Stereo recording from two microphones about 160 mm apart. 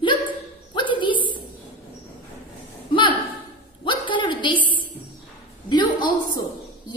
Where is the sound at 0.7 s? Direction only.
30° left (ahead or behind).